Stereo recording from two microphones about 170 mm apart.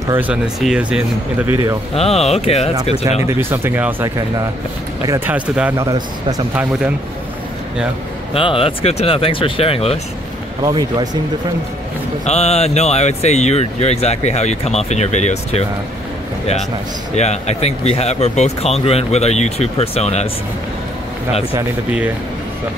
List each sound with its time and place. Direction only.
0.1 s speech: 10° right (ahead or behind)
2.0 s speech: 35° left (ahead or behind)
3.3 s speech: 15° right (ahead or behind)
6.5 s speech: 10° right (ahead or behind)
8.3 s speech: 30° left (ahead or behind)
10.7 s speech: 25° right (ahead or behind)
12.3 s speech: 40° left (ahead or behind)
17.1 s speech: 40° left (ahead or behind)